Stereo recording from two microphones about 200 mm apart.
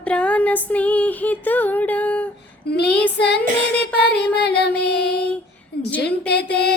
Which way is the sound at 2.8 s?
5° left (ahead or behind).